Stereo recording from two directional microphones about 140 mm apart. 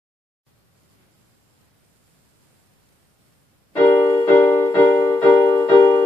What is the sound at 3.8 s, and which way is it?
Music, 15° left (ahead or behind).